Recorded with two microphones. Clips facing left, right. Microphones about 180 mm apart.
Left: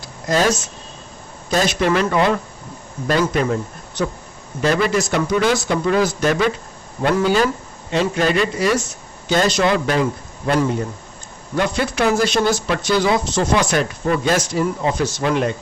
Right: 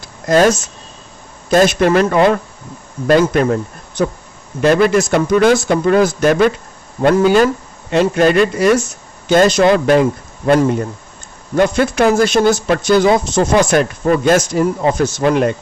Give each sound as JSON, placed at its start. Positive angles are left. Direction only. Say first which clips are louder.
{"t": 0.3, "sound": "speech", "louder": "right 6 dB", "side_deg": -50}